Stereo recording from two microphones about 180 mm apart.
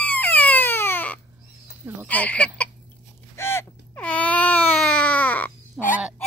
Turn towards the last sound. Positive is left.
turn(degrees=10)  # may be behind; listen again after turning